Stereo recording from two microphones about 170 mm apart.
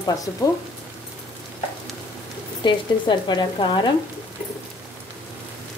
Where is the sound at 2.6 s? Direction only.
25° left (ahead or behind).